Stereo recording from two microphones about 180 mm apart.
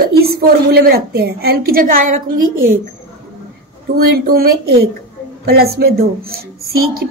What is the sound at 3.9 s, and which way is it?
A woman's voice, 55° right (ahead or behind).